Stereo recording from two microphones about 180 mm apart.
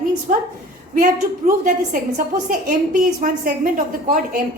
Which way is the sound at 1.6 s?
50° right (ahead or behind).